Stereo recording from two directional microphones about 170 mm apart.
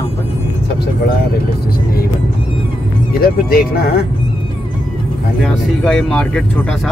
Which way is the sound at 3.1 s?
60° left (ahead or behind).